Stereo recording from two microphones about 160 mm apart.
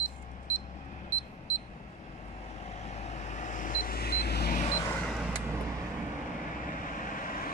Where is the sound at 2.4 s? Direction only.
40° left (ahead or behind); by 4.5 s 80° left.